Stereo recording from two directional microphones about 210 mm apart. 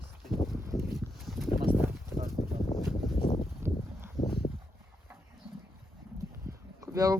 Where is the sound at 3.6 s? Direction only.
10° right (ahead or behind).